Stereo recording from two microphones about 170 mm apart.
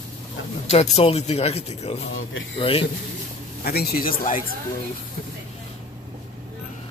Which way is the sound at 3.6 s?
65° left (ahead or behind).